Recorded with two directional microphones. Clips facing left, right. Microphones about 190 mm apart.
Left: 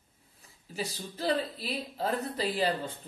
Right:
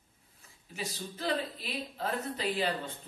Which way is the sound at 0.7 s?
35° left (ahead or behind).